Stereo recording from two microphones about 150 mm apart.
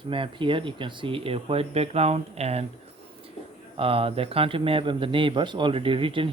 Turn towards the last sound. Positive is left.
turn(degrees=-35)  # may be behind; listen again after turning